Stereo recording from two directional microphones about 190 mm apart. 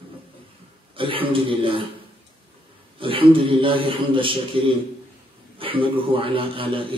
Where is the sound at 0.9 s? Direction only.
30° right (ahead or behind).